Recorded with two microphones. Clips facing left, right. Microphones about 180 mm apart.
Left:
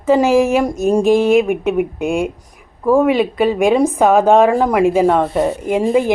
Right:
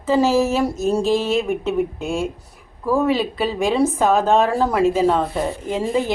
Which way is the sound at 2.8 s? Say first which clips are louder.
Left 6 dB; 55° left (ahead or behind).